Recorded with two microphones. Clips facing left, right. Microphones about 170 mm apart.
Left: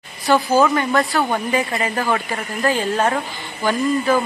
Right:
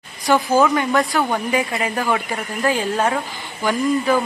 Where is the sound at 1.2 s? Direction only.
5° right (ahead or behind).